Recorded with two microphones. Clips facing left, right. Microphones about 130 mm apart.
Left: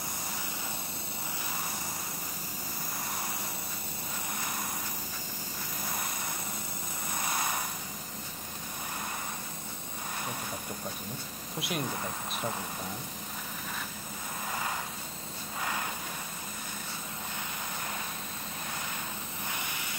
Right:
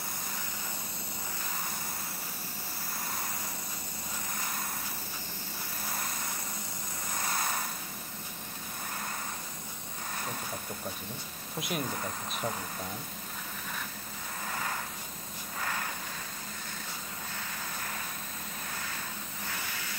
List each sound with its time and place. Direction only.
7.2 s a sound: 15° left (ahead or behind)
11.6 s speech: 5° left (ahead or behind)
14.5 s vehicle: 15° left (ahead or behind)
19.4 s vehicle: 20° left (ahead or behind)